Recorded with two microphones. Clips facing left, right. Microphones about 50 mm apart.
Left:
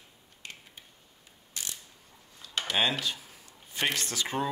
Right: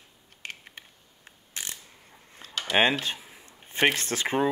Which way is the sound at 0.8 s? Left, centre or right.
Right.